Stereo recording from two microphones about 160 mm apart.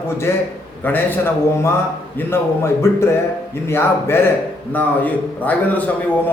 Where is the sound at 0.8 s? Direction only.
10° left (ahead or behind).